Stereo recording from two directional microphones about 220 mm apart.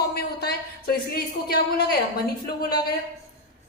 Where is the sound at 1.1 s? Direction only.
45° left (ahead or behind).